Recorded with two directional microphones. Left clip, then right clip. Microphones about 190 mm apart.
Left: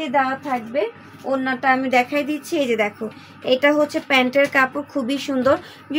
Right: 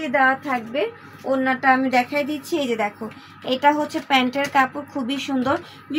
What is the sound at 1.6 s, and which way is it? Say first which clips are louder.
A woman's voice: left 2 dB; 30° left (ahead or behind).